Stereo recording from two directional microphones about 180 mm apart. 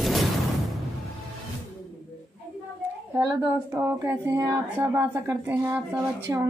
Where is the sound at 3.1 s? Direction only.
10° right (ahead or behind).